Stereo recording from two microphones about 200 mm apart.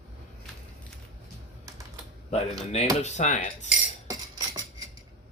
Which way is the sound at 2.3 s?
30° left (ahead or behind).